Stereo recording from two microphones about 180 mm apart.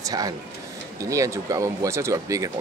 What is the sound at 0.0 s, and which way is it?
Speech, 20° right (ahead or behind).